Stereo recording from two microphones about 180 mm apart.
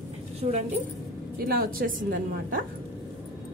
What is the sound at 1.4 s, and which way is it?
A woman's voice, 55° right (ahead or behind).